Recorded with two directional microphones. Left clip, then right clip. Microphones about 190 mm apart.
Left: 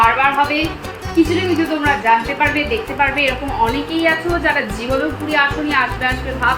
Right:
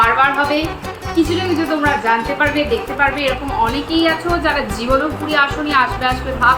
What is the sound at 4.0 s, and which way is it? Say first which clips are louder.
Speech: even; centre (ahead or behind).